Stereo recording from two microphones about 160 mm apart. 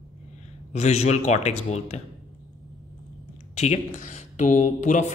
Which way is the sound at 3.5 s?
45° left (ahead or behind).